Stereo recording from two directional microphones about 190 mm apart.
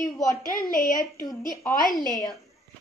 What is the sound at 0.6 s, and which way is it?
A woman's voice, 50° left (ahead or behind).